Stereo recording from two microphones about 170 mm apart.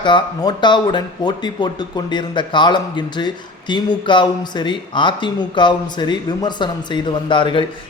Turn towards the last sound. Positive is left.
turn(degrees=30)  # may be behind; listen again after turning